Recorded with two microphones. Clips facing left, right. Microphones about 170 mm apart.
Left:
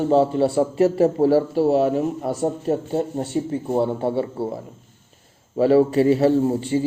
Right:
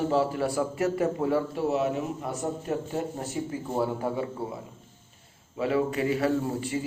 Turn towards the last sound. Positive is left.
turn(degrees=30)  # may be behind; listen again after turning